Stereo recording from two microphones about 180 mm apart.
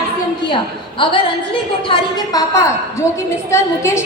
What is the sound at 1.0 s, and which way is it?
A woman's voice, 30° left (ahead or behind).